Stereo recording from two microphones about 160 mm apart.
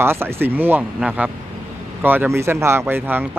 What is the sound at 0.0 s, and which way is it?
Speech, 15° right (ahead or behind).